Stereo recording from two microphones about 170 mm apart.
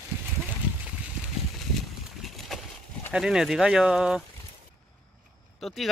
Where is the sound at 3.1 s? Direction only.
5° right (ahead or behind).